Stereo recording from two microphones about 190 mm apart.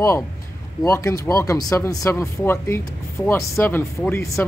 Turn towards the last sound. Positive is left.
turn(degrees=10)  # may be behind; listen again after turning